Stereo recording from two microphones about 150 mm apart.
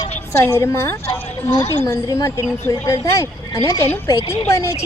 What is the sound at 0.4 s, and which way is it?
A woman's voice, 15° left (ahead or behind).